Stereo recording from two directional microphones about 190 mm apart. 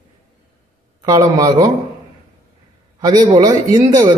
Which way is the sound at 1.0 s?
20° right (ahead or behind).